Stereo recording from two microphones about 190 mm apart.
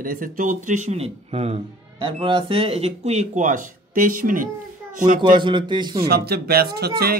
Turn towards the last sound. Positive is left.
turn(degrees=-55)  # may be behind; listen again after turning